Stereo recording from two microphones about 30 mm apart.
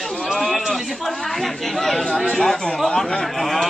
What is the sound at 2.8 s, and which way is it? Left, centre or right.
Speech, left.